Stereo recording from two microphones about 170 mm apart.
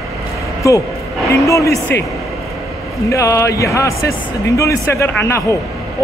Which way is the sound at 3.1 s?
20° left (ahead or behind).